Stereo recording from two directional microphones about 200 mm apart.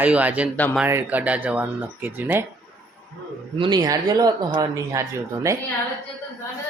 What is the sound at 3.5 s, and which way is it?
Speech, 25° right (ahead or behind).